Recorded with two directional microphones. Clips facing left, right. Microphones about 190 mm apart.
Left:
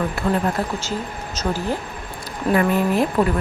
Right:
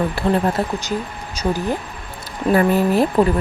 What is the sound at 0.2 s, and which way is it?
Speech, 30° right (ahead or behind).